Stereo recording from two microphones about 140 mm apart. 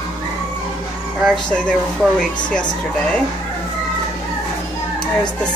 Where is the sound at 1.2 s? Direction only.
5° left (ahead or behind).